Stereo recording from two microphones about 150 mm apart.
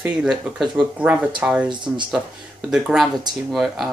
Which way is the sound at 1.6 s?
30° right (ahead or behind).